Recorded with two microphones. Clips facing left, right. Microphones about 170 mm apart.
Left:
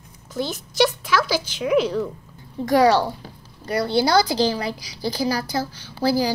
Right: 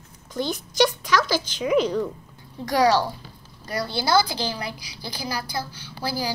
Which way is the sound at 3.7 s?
65° left (ahead or behind).